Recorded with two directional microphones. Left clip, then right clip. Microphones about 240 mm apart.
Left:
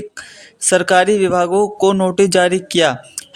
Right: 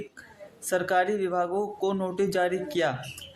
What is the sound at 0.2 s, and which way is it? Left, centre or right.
Speech, left.